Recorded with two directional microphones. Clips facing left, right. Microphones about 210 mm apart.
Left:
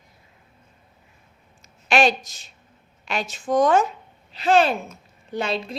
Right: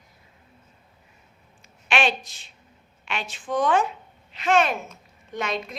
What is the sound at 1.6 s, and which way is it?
A woman's voice, 40° left (ahead or behind).